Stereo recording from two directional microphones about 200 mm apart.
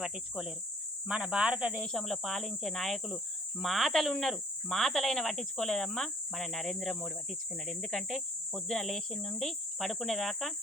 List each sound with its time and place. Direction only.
0.0 s speech: centre (ahead or behind)